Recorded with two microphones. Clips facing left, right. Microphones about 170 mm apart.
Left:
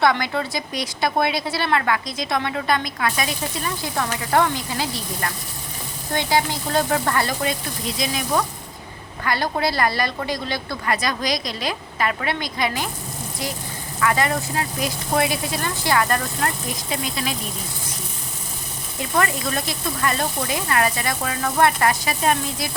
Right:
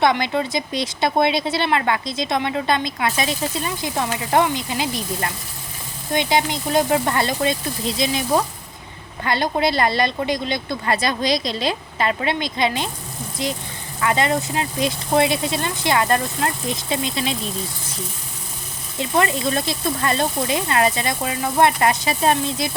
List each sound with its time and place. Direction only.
0.0 s speech: 20° right (ahead or behind)
18.9 s speech: 20° right (ahead or behind)